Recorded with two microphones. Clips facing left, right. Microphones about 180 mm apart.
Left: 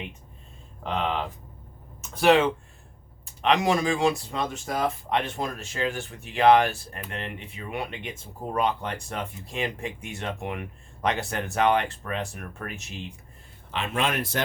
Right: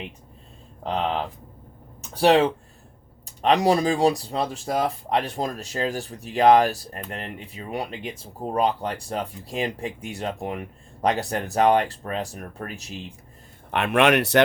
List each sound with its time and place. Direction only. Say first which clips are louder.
0.8 s speech: right 3 dB; 35° right (ahead or behind)
2.0 s a sound: right 2 dB; 35° right (ahead or behind)
3.2 s speech: right 4 dB; 35° right (ahead or behind)
13.7 s speech: right 8 dB; 60° right (ahead or behind)